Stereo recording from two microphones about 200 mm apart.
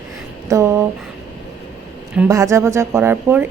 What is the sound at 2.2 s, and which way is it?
A woman's voice, 15° right (ahead or behind).